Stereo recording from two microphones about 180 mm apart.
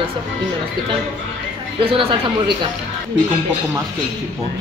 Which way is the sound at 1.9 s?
30° right (ahead or behind).